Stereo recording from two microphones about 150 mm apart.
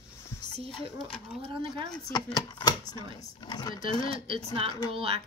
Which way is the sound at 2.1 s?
25° left (ahead or behind).